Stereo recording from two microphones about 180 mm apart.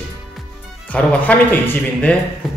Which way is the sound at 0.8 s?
10° left (ahead or behind).